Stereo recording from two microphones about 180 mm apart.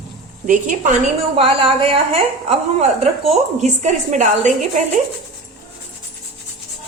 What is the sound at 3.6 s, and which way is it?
Speech, 40° right (ahead or behind).